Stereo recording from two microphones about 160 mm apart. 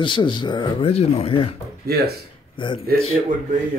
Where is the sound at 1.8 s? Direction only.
75° right (ahead or behind).